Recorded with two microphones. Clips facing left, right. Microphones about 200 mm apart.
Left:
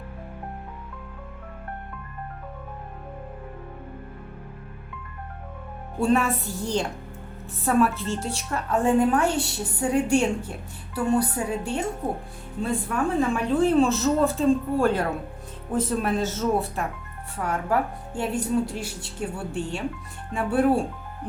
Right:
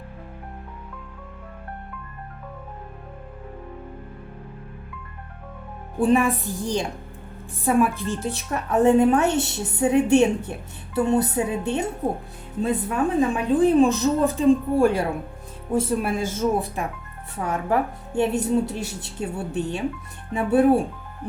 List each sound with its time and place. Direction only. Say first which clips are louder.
6.0 s a woman's voice: right 3 dB; 15° right (ahead or behind)